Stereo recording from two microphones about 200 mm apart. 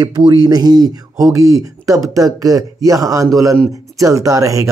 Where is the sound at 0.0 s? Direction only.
20° right (ahead or behind).